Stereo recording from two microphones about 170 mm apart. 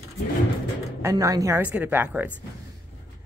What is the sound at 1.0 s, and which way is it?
Speech, 20° right (ahead or behind).